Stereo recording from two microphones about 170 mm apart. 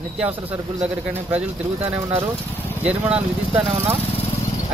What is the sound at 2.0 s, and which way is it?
Speech, 20° right (ahead or behind).